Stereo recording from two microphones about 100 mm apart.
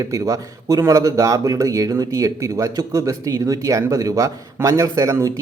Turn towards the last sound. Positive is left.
turn(degrees=-30)  # may be behind; listen again after turning